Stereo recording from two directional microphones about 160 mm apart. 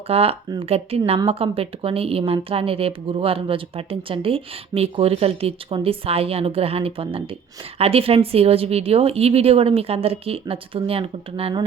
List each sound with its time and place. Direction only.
0.1 s speech: 35° right (ahead or behind)